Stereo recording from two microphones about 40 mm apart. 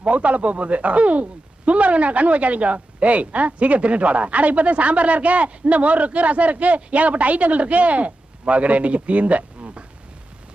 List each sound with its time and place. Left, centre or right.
0.0 s speech: right